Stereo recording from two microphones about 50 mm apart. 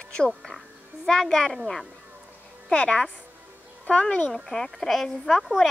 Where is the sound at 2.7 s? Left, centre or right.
Left.